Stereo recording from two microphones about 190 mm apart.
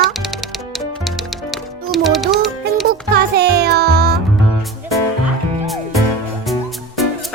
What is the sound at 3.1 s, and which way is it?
Music, 55° right (ahead or behind).